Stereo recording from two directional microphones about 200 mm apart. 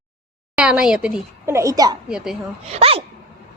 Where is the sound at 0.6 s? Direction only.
5° right (ahead or behind).